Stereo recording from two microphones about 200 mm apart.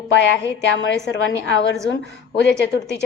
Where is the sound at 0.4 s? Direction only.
15° right (ahead or behind).